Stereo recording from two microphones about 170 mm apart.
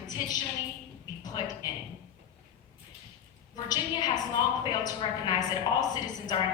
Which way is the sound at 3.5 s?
25° left (ahead or behind).